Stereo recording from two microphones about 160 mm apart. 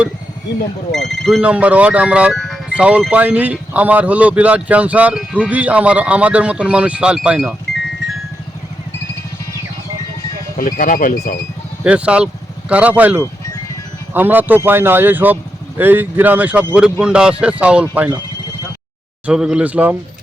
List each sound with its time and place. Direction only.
0.9 s speech: centre (ahead or behind)
2.3 s music: 5° left (ahead or behind)
2.7 s speech: 5° right (ahead or behind)
10.6 s speech: 60° left (ahead or behind)
11.8 s speech: 5° right (ahead or behind)
19.2 s speech: 5° right (ahead or behind)